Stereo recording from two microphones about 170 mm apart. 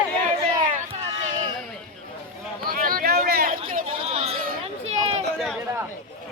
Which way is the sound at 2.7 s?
60° right (ahead or behind).